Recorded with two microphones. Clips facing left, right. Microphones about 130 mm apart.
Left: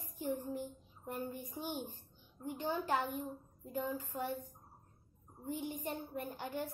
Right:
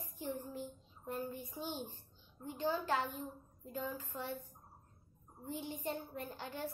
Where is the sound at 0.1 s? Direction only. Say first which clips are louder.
Left 4 dB; 15° left (ahead or behind).